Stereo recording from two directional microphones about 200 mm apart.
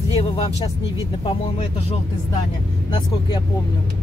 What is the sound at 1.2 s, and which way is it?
Speech, 30° left (ahead or behind).